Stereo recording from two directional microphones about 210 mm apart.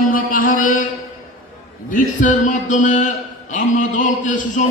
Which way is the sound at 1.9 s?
40° left (ahead or behind).